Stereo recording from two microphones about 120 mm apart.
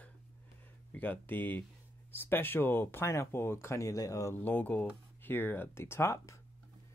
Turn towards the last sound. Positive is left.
turn(degrees=25)  # may be behind; listen again after turning